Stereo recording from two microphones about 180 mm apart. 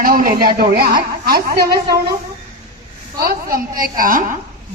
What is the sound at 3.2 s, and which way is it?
A woman's voice, 55° right (ahead or behind).